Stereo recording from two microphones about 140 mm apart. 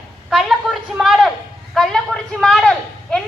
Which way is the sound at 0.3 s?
Centre (ahead or behind).